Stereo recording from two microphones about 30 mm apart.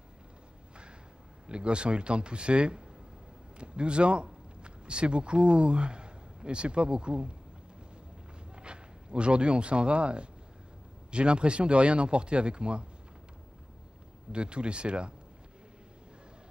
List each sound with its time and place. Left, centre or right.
1.5 s speech: right
8.5 s a man's voice: right
14.3 s speech: right